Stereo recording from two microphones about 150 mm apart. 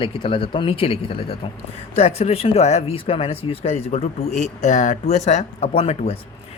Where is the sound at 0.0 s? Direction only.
35° left (ahead or behind).